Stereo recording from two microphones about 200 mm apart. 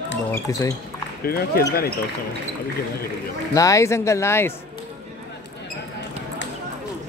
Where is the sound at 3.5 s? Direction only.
15° left (ahead or behind).